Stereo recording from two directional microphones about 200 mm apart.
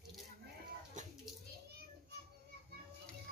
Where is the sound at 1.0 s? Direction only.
40° right (ahead or behind).